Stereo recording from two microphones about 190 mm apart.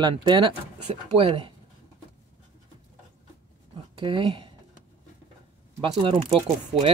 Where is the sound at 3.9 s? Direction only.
30° right (ahead or behind).